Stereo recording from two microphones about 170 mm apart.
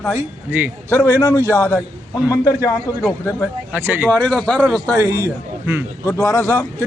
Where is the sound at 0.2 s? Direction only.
10° right (ahead or behind).